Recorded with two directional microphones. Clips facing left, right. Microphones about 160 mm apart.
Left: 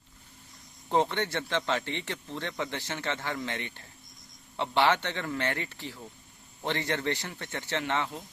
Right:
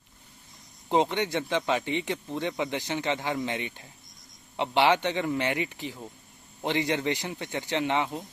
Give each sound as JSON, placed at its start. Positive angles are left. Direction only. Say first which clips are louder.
{"t": 0.9, "sound": "speech", "louder": "right 2 dB", "side_deg": -15}